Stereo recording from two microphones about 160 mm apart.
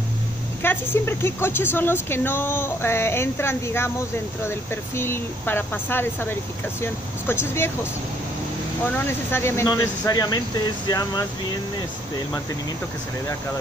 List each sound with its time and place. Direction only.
0.6 s speech: 15° left (ahead or behind)
8.8 s speech: 15° left (ahead or behind)